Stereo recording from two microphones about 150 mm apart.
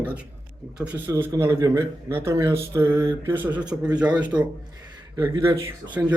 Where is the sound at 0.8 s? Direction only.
15° right (ahead or behind).